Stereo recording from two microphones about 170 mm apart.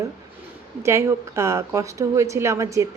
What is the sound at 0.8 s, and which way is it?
A woman's voice, 15° right (ahead or behind).